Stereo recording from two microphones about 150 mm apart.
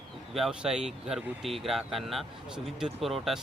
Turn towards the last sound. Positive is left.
turn(degrees=0)  # may be behind; listen again after turning